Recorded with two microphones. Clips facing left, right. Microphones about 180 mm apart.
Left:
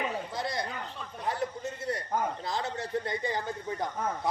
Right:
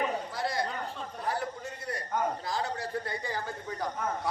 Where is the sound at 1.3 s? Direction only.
25° left (ahead or behind).